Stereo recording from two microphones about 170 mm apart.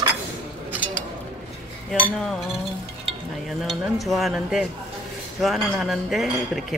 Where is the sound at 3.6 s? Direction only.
Centre (ahead or behind).